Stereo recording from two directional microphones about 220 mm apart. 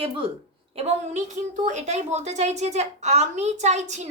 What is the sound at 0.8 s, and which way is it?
A woman's voice, 30° right (ahead or behind).